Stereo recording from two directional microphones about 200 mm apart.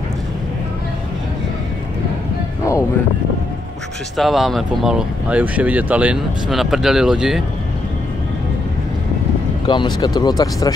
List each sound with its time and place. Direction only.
4.2 s speech: centre (ahead or behind)
9.7 s speech: 20° left (ahead or behind)